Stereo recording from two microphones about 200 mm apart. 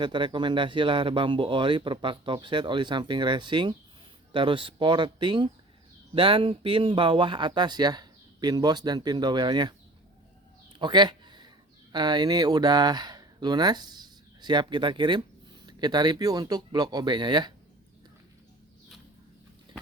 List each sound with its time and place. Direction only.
0.0 s speech: 25° right (ahead or behind)
10.8 s a sound: 20° right (ahead or behind)
11.9 s speech: 20° right (ahead or behind)